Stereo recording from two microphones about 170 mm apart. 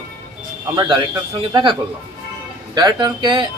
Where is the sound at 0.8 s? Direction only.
25° right (ahead or behind).